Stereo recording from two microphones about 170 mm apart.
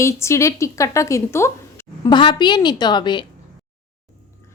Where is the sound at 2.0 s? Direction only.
25° left (ahead or behind).